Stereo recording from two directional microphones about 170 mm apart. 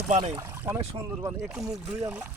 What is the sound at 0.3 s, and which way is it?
Speech, 15° right (ahead or behind).